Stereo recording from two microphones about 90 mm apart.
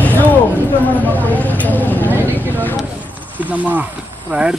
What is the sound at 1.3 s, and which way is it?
Speech, 20° left (ahead or behind).